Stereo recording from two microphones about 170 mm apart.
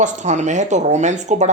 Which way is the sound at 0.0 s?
45° right (ahead or behind).